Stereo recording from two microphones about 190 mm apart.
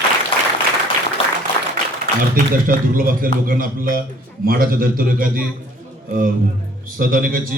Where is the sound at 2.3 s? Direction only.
50° right (ahead or behind).